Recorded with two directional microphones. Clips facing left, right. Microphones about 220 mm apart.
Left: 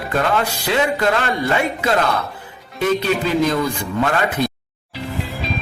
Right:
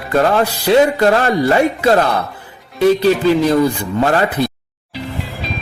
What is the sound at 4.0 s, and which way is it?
Speech, 35° right (ahead or behind).